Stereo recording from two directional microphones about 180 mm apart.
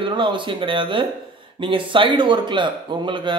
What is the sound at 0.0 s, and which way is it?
Speech, 25° right (ahead or behind).